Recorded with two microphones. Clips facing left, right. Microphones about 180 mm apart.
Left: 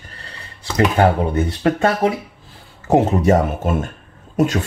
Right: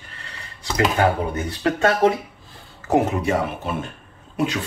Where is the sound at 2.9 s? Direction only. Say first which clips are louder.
Left 4 dB; 25° left (ahead or behind).